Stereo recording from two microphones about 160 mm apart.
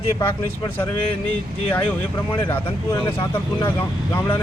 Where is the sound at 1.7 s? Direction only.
10° left (ahead or behind).